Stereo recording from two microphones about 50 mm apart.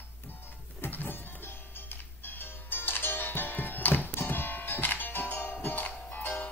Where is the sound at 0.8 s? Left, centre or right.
Left.